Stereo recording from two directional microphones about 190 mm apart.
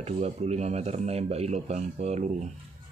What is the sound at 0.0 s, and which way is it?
Speech, 35° right (ahead or behind).